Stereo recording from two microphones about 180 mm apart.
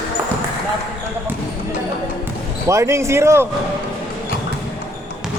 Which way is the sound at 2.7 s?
15° right (ahead or behind).